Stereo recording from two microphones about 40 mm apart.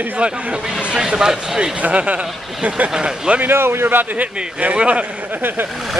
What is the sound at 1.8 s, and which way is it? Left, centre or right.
Speech, right.